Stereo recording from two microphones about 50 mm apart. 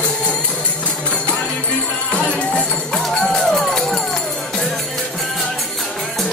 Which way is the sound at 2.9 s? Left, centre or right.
Centre.